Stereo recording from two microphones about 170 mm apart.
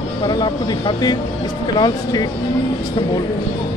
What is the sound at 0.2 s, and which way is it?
Speech, 25° left (ahead or behind).